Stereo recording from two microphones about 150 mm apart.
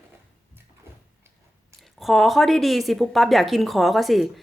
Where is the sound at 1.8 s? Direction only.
Centre (ahead or behind).